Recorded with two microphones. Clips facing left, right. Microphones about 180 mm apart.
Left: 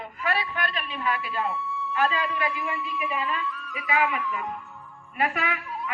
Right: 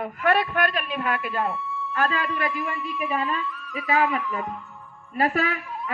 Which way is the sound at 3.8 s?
40° right (ahead or behind).